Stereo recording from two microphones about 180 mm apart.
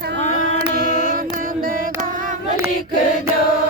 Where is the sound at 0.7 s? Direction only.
45° left (ahead or behind).